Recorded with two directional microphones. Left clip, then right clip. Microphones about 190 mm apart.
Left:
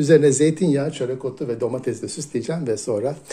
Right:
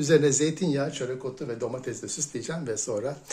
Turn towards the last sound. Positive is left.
turn(degrees=25)  # may be behind; listen again after turning